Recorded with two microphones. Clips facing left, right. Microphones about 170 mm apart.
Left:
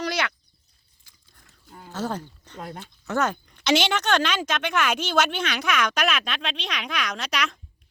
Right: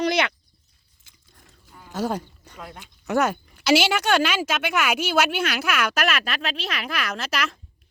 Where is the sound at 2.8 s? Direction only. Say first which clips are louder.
Right 3 dB; 10° right (ahead or behind).